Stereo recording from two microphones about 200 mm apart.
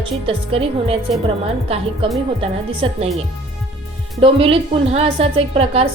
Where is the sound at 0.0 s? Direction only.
30° right (ahead or behind).